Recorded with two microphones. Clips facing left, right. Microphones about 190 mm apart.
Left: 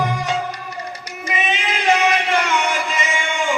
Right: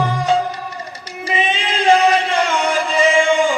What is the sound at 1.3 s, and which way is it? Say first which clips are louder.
Chant: right 3 dB; 30° right (ahead or behind).